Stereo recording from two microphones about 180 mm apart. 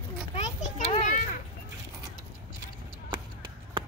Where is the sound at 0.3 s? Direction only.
40° left (ahead or behind).